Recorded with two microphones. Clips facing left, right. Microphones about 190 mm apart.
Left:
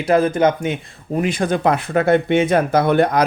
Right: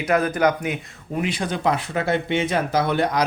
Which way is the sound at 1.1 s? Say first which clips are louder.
Left 6 dB; 45° left (ahead or behind).